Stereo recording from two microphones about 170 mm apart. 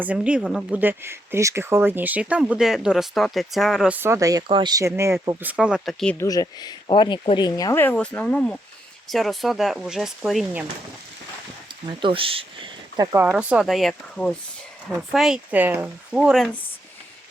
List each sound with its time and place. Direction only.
0.0 s speech: 5° right (ahead or behind)
6.1 s speech: 20° left (ahead or behind); by 10.7 s 5° right (ahead or behind)
12.0 s speech: 30° right (ahead or behind)
13.3 s speech: 5° right (ahead or behind)